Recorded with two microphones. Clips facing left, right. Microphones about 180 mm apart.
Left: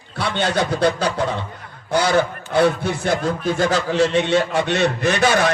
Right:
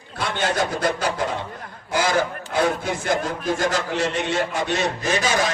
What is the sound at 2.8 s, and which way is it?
A man's voice, 65° left (ahead or behind).